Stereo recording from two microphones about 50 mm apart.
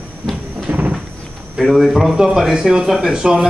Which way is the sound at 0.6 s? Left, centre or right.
Right.